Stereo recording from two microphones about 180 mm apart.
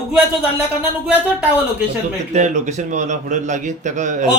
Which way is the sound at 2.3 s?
40° right (ahead or behind).